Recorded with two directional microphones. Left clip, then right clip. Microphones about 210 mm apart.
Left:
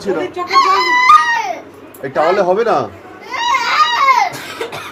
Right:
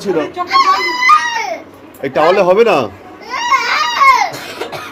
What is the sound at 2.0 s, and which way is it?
Speech, 35° right (ahead or behind).